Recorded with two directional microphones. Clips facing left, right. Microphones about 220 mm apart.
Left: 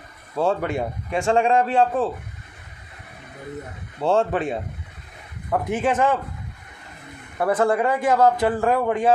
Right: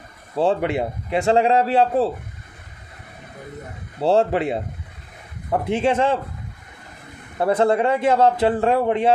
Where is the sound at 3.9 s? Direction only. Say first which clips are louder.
Right 3 dB; 30° right (ahead or behind).